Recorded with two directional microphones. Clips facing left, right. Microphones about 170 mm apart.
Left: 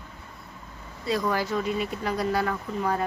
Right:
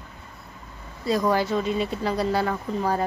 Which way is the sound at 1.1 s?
30° right (ahead or behind).